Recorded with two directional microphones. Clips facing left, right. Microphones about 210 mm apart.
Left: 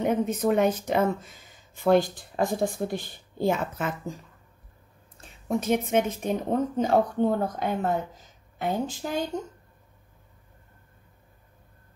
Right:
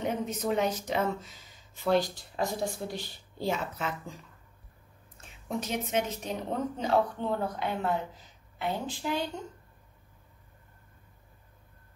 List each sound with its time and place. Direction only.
0.0 s speech: 55° left (ahead or behind)
5.5 s speech: 50° left (ahead or behind)